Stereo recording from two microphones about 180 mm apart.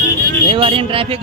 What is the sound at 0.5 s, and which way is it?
Speech, 30° right (ahead or behind).